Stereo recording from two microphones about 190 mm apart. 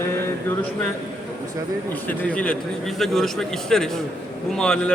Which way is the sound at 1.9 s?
10° left (ahead or behind).